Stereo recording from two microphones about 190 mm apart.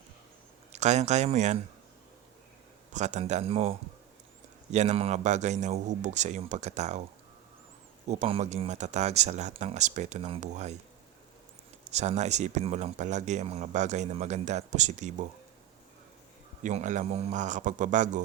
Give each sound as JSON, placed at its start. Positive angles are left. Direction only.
{"t": 0.7, "sound": "speech", "side_deg": -35}
{"t": 2.9, "sound": "speech", "side_deg": -40}
{"t": 8.0, "sound": "speech", "side_deg": -35}
{"t": 11.9, "sound": "speech", "side_deg": -35}
{"t": 16.6, "sound": "speech", "side_deg": -40}